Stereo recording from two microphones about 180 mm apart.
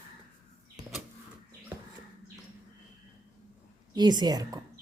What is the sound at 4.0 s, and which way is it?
Speech, 25° right (ahead or behind).